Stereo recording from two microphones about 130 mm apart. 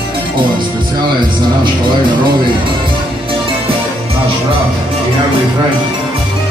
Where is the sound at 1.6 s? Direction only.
35° right (ahead or behind).